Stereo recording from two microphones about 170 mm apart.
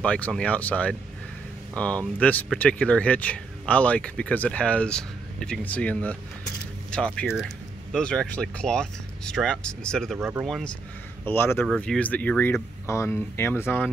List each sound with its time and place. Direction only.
0.0 s speech: 5° left (ahead or behind)
7.2 s speech: centre (ahead or behind)
10.1 s speech: 15° right (ahead or behind)
10.4 s speech: centre (ahead or behind)
11.2 s speech: 15° left (ahead or behind)
11.6 s speech: centre (ahead or behind)